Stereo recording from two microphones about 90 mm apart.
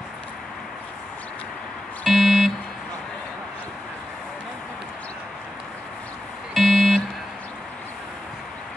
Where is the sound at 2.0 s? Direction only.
Centre (ahead or behind).